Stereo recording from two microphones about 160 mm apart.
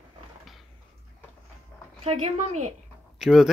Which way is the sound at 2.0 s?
40° right (ahead or behind).